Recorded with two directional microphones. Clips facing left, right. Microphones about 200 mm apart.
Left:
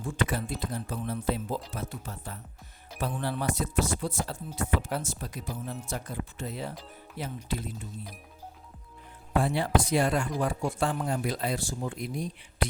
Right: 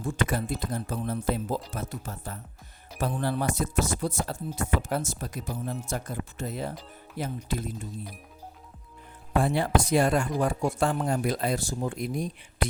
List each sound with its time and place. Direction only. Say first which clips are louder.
0.0 s speech: right 2 dB; 45° right (ahead or behind)
9.4 s speech: right 2 dB; 50° right (ahead or behind)